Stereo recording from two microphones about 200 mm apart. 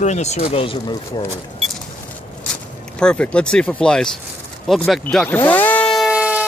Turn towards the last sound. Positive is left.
turn(degrees=-5)  # may be behind; listen again after turning